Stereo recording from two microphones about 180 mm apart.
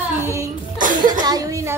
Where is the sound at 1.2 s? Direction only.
20° right (ahead or behind).